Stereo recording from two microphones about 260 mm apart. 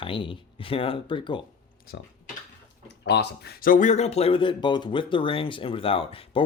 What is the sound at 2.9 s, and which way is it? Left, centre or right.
Speech, left.